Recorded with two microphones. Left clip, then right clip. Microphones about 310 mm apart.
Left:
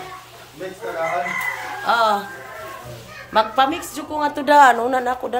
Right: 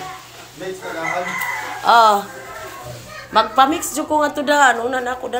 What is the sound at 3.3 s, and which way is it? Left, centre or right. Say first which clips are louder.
A woman's voice: right 3 dB; centre.